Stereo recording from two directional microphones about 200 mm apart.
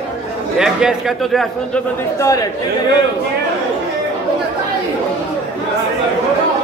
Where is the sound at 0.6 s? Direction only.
5° right (ahead or behind).